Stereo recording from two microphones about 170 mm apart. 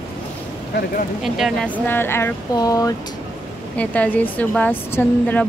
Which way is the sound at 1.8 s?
15° left (ahead or behind).